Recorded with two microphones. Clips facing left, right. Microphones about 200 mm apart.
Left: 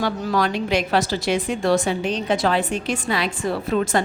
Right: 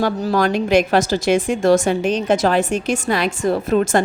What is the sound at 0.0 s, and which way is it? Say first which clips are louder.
A woman's voice: right 4 dB; 45° right (ahead or behind).